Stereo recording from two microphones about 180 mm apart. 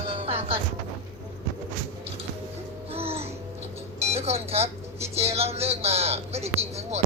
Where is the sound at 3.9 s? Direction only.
35° right (ahead or behind).